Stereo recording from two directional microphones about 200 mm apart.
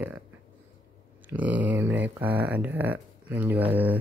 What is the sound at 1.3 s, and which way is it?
Speech, 10° right (ahead or behind).